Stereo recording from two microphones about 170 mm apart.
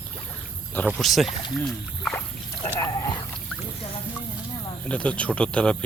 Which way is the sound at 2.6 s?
20° left (ahead or behind).